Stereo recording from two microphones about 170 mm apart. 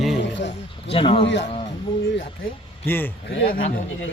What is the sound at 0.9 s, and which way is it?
Speech, 30° left (ahead or behind).